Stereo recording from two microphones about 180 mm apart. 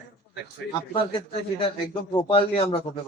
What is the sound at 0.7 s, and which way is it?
A man's voice, 30° left (ahead or behind).